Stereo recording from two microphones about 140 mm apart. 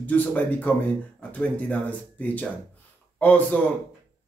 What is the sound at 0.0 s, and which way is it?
A man's voice, 10° left (ahead or behind).